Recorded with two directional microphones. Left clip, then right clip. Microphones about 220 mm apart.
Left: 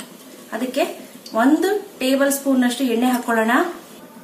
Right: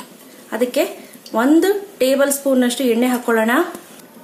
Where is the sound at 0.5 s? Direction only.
40° right (ahead or behind).